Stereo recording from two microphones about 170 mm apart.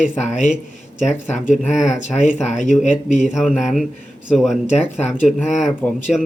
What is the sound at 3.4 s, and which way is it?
Speech, centre (ahead or behind).